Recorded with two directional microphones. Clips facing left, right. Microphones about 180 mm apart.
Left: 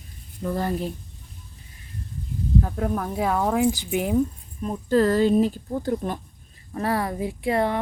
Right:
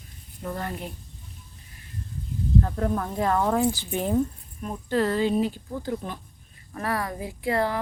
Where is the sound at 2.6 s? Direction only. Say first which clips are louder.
Left 1 dB; 5° left (ahead or behind).